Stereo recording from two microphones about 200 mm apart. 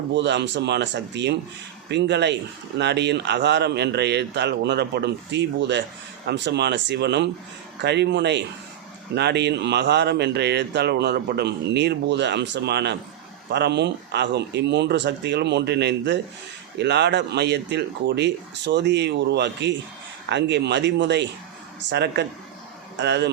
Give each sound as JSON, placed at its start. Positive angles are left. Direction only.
{"t": 0.1, "sound": "speech", "side_deg": -60}